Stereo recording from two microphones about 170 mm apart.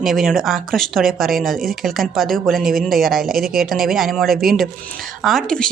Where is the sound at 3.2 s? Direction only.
60° right (ahead or behind).